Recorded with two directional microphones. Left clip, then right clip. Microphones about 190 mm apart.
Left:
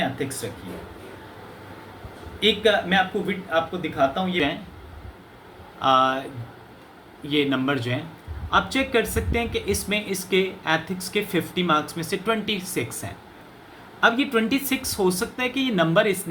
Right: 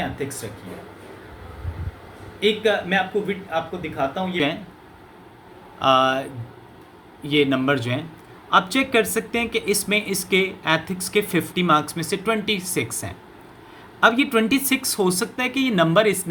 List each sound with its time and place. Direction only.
2.4 s speech: 10° right (ahead or behind)
5.8 s speech: 35° right (ahead or behind)
7.3 s speech: 35° right (ahead or behind)